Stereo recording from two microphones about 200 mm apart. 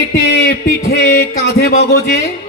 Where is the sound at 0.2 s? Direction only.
50° left (ahead or behind).